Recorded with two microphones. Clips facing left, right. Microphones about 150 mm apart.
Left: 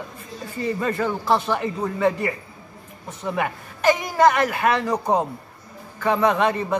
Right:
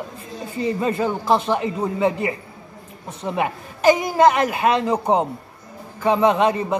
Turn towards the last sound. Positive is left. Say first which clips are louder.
# right 2 dB
turn(degrees=-20)  # may be behind; listen again after turning